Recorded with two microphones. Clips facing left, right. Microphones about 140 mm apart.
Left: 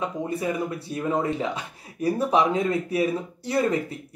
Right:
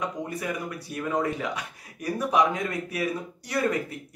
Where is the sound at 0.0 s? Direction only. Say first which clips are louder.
Left 4 dB; 25° left (ahead or behind).